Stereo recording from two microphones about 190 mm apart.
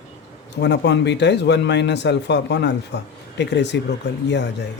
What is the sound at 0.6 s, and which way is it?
A man's voice, 65° left (ahead or behind).